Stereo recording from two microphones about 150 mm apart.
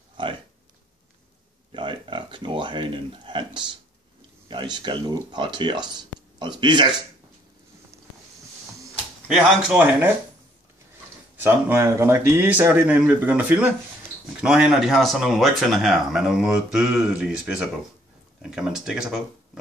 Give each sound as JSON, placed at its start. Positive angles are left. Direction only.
{"t": 1.7, "sound": "a sound", "side_deg": -35}
{"t": 4.5, "sound": "speech", "side_deg": -30}
{"t": 9.7, "sound": "speech", "side_deg": -15}
{"t": 11.4, "sound": "speech", "side_deg": -15}